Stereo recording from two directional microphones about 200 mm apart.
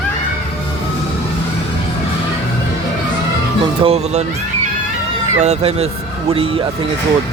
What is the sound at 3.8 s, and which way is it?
Speech, 30° right (ahead or behind).